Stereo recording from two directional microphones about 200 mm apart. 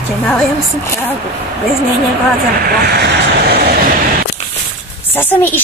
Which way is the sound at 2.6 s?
55° right (ahead or behind).